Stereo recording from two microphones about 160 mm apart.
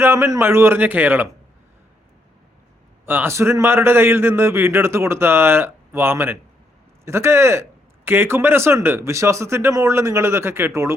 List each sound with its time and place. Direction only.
0.0 s a man's voice: 15° right (ahead or behind)
3.1 s a man's voice: 15° right (ahead or behind)